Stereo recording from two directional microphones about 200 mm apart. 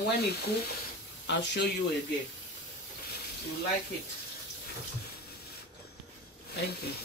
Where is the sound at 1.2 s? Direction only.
60° left (ahead or behind).